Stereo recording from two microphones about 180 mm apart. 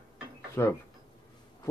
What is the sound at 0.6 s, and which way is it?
Speech, 15° left (ahead or behind).